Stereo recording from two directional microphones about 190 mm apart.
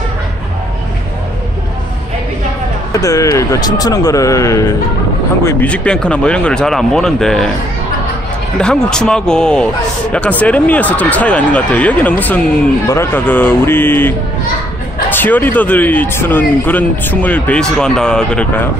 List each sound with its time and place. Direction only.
2.9 s a man's voice: 15° left (ahead or behind); by 7.4 s centre (ahead or behind)
8.5 s a man's voice: 5° left (ahead or behind)